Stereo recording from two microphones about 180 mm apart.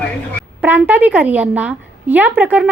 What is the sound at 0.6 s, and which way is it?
A woman's voice, 10° right (ahead or behind).